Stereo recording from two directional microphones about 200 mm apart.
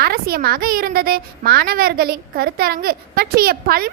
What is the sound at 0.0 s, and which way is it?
A woman's voice, 50° right (ahead or behind).